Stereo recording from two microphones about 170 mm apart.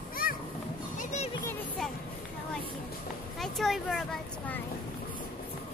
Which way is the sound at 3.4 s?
Centre (ahead or behind).